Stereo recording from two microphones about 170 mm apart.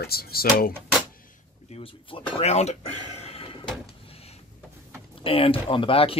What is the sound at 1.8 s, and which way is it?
Speech, 30° left (ahead or behind).